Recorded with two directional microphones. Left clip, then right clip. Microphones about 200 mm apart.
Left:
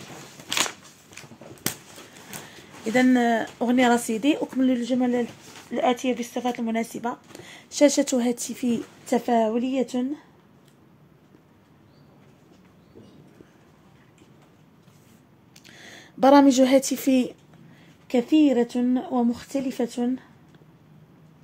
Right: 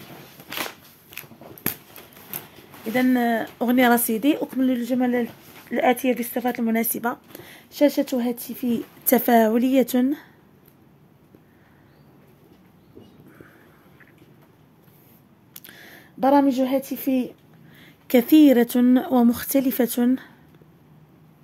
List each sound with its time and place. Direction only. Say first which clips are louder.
2.9 s speech: left 1 dB; centre (ahead or behind)
3.5 s speech: right 5 dB; 15° right (ahead or behind)
5.7 s speech: right 3 dB; 20° right (ahead or behind)
7.4 s speech: left 1 dB; 5° right (ahead or behind)
9.1 s speech: right 4 dB; 35° right (ahead or behind)
15.5 s a sound: right 3 dB; 20° right (ahead or behind)
15.8 s a sound: left 2 dB; 5° right (ahead or behind)
16.5 s a woman's voice: left 4 dB; 10° left (ahead or behind)
17.7 s speech: right 5 dB; 30° right (ahead or behind)